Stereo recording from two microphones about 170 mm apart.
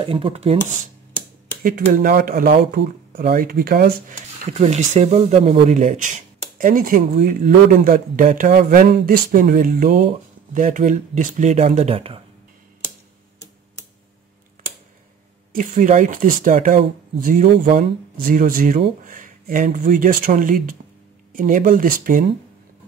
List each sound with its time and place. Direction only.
0.0 s speech: 35° right (ahead or behind)
1.6 s speech: 55° right (ahead or behind)
4.6 s speech: 40° right (ahead or behind)
15.5 s speech: 50° right (ahead or behind)